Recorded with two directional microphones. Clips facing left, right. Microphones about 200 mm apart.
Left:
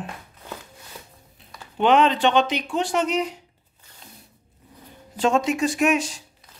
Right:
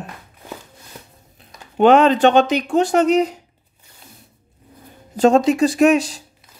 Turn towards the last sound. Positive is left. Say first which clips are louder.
# right 7 dB
turn(degrees=-35)  # may be behind; listen again after turning